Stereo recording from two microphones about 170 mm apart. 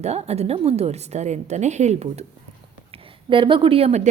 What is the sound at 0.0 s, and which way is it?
A woman's voice, 40° right (ahead or behind).